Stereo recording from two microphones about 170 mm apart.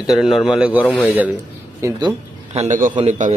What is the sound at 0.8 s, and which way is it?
Speech, 10° left (ahead or behind).